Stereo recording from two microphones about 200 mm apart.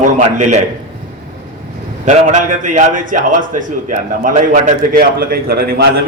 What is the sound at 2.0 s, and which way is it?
A man's voice, 40° right (ahead or behind).